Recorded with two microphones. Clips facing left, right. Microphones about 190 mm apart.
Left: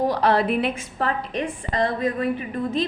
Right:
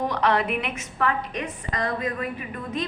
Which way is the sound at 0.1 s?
35° left (ahead or behind).